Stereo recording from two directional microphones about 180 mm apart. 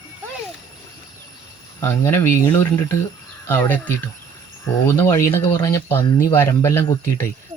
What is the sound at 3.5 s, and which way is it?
Speech, 10° left (ahead or behind).